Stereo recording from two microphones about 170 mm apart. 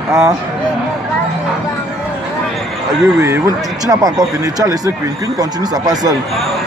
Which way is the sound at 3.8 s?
20° right (ahead or behind).